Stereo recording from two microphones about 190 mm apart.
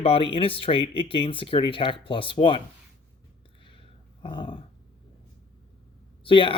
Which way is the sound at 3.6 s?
25° left (ahead or behind).